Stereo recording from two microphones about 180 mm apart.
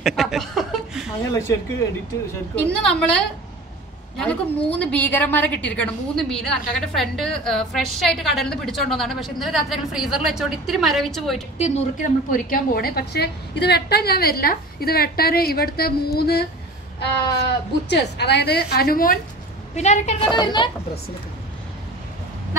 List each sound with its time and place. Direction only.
0.0 s speech: centre (ahead or behind)
2.5 s a woman's voice: 5° left (ahead or behind)
11.5 s speech: 35° left (ahead or behind)
12.3 s a woman's voice: 50° left (ahead or behind)
19.7 s speech: 40° left (ahead or behind)
20.2 s speech: 25° left (ahead or behind)